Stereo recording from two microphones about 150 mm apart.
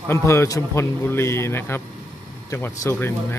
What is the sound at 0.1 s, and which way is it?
A man's voice, 20° left (ahead or behind).